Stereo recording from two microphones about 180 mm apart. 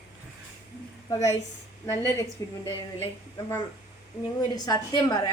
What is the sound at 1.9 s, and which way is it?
Speech, 15° left (ahead or behind).